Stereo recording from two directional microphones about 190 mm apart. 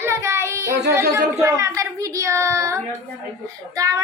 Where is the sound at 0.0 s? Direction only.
15° right (ahead or behind).